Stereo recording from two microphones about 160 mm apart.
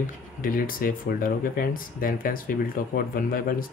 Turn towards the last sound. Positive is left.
turn(degrees=65)  # may be behind; listen again after turning